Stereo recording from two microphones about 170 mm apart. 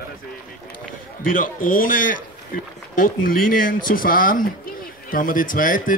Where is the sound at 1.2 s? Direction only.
55° left (ahead or behind).